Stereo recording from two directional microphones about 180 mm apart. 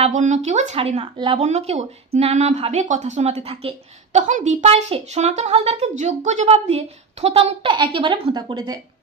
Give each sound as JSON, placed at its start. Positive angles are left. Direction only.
{"t": 0.0, "sound": "speech", "side_deg": -40}